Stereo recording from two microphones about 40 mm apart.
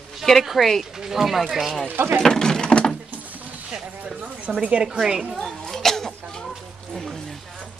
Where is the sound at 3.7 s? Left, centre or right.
Right.